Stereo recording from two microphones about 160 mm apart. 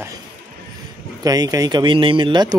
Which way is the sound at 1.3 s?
20° right (ahead or behind).